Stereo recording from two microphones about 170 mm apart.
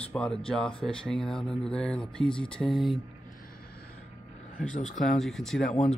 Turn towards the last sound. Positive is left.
turn(degrees=0)  # may be behind; listen again after turning